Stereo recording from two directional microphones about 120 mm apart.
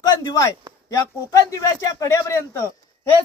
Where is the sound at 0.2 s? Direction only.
30° left (ahead or behind).